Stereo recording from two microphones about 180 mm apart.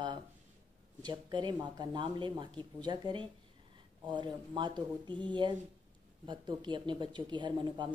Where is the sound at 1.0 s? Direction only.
25° right (ahead or behind).